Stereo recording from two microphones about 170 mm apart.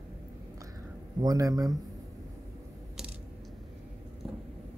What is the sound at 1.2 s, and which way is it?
Speech, 20° right (ahead or behind).